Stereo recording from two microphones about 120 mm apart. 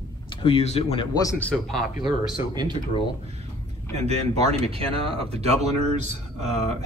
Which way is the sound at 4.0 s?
60° right (ahead or behind).